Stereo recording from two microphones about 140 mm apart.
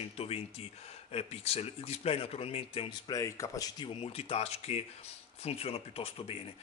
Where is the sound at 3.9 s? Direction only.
45° left (ahead or behind).